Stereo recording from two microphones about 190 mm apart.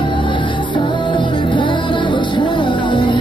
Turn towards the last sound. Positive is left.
turn(degrees=25)  # may be behind; listen again after turning